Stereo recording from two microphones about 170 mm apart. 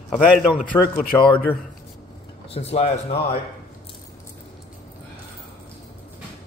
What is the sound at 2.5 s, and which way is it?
Speech, 40° left (ahead or behind).